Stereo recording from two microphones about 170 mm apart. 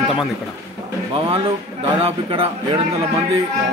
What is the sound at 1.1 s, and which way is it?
Speech, 35° right (ahead or behind).